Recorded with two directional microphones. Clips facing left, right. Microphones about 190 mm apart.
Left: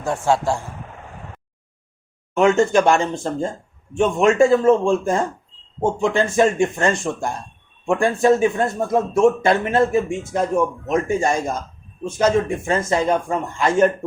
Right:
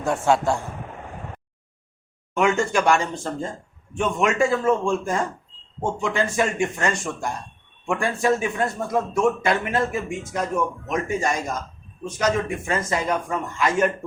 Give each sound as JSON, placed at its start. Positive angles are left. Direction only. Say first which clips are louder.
{"t": 2.6, "sound": "a man's voice", "louder": "left 5 dB", "side_deg": 25}